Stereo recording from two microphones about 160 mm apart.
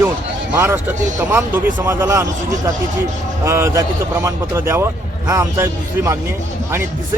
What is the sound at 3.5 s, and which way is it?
A man's voice, 15° right (ahead or behind).